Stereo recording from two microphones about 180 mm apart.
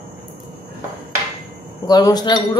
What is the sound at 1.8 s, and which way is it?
Speech, 20° left (ahead or behind).